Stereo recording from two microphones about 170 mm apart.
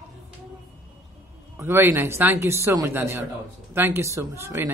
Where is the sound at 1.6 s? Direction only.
15° right (ahead or behind).